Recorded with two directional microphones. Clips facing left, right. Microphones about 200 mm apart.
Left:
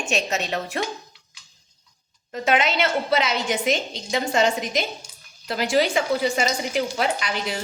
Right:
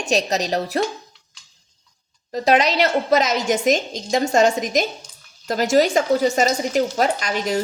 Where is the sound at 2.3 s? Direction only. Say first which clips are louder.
Right 4 dB; 40° right (ahead or behind).